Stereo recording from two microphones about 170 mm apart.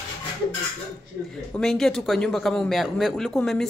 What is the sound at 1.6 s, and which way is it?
A man's voice, centre (ahead or behind).